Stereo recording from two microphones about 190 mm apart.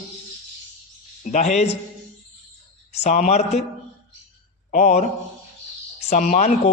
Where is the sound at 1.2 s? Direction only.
40° left (ahead or behind).